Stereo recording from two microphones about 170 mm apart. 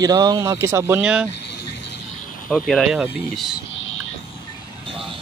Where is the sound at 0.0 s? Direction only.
20° right (ahead or behind).